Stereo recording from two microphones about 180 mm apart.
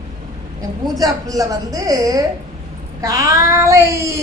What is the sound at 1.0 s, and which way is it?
A woman's voice, 20° right (ahead or behind).